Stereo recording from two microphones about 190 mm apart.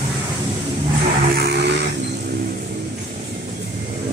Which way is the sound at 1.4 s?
65° right (ahead or behind).